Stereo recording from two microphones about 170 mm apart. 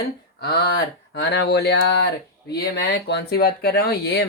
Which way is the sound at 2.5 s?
75° left (ahead or behind).